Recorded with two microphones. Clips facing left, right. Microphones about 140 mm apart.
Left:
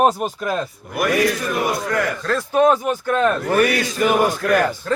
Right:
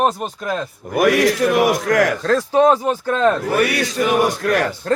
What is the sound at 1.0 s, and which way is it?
Speech, 90° right.